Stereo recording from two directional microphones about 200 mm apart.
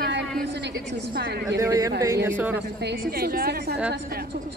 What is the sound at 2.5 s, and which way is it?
A woman's voice, 60° right (ahead or behind).